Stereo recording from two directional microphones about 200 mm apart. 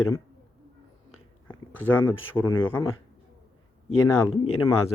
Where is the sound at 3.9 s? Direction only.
90° left.